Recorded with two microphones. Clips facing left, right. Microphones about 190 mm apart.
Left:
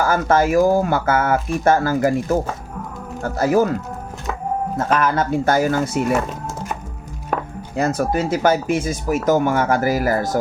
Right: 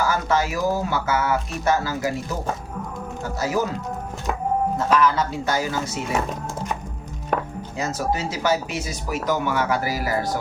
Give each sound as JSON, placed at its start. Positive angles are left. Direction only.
{"t": 0.0, "sound": "speech", "side_deg": 50}
{"t": 4.9, "sound": "speech", "side_deg": 50}
{"t": 7.8, "sound": "speech", "side_deg": 55}